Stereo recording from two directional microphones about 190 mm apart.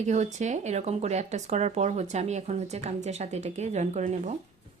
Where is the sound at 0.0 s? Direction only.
40° right (ahead or behind).